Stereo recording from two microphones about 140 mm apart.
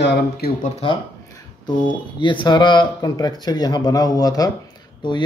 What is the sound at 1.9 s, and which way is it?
Speech, 35° left (ahead or behind).